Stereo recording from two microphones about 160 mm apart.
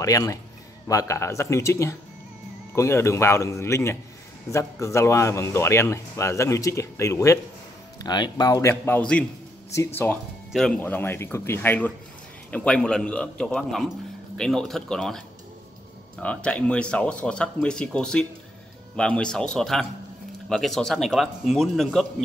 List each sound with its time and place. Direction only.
0.0 s a man's voice: 20° left (ahead or behind); by 22.0 s centre (ahead or behind)